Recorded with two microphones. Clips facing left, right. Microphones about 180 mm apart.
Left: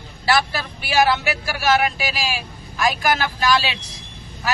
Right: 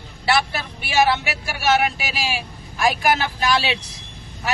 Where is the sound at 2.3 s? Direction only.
25° right (ahead or behind).